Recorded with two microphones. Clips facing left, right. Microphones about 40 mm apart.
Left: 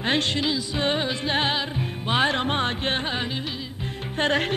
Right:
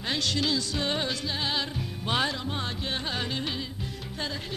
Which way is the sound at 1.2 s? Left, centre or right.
Left.